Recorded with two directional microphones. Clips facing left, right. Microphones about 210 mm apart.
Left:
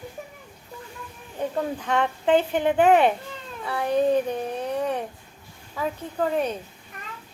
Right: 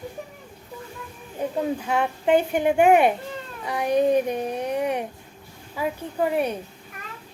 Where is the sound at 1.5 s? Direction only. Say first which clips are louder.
Right 1 dB; 10° right (ahead or behind).